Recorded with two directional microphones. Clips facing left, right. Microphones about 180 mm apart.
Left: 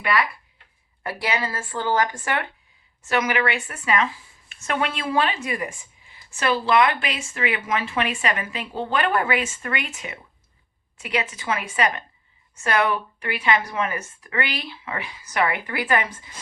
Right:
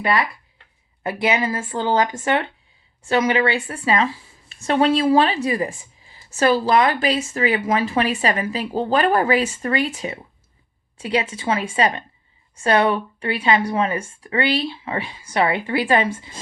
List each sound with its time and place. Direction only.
1.0 s speech: 20° right (ahead or behind)